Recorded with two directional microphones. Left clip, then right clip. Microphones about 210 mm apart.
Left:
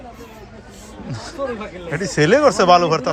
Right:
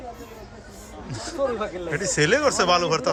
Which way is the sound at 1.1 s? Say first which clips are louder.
Left 2 dB; centre (ahead or behind).